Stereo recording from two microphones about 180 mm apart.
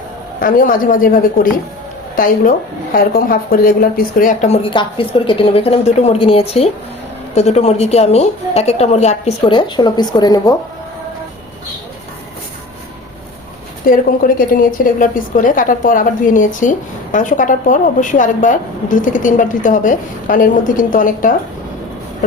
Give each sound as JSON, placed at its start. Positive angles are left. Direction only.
{"t": 0.3, "sound": "a woman's voice", "side_deg": 50}
{"t": 13.8, "sound": "a woman's voice", "side_deg": 50}